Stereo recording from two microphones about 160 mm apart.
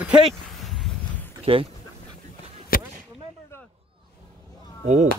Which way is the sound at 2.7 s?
65° left (ahead or behind).